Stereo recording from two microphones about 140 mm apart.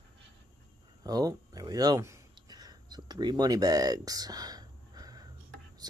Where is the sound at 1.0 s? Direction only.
25° right (ahead or behind).